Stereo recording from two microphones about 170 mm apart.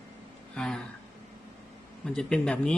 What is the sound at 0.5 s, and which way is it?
Speech, 5° left (ahead or behind).